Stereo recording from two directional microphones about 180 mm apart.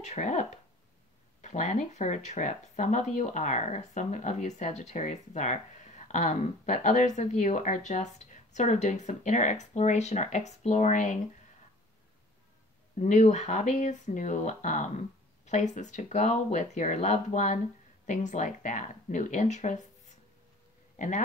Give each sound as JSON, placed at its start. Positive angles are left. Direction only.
{"t": 0.0, "sound": "speech", "side_deg": 40}
{"t": 13.0, "sound": "speech", "side_deg": 40}